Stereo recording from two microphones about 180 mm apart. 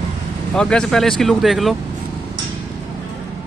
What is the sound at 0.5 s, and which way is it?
Speech, 5° left (ahead or behind).